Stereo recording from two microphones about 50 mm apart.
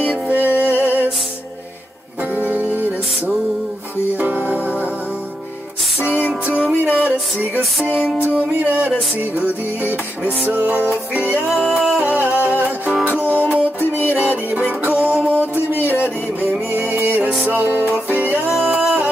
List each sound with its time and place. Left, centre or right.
0.3 s music: right
2.3 s music: right
4.2 s music: right
7.0 s music: right
7.8 s music: left
8.4 s music: right
11.5 s music: centre
12.0 s music: right
13.7 s music: left
14.8 s music: right
18.6 s music: centre